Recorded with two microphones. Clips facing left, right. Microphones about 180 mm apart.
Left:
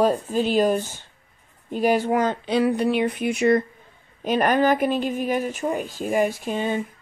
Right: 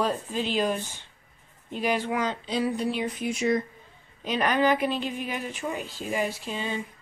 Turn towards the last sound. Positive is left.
turn(degrees=50)  # may be behind; listen again after turning